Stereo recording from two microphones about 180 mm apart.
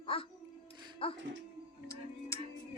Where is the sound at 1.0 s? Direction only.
30° left (ahead or behind).